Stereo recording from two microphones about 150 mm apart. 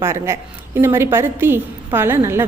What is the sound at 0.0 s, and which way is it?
A woman's voice, 15° right (ahead or behind).